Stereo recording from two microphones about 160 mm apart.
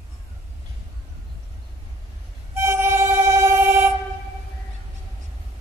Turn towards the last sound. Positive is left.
turn(degrees=-15)  # may be behind; listen again after turning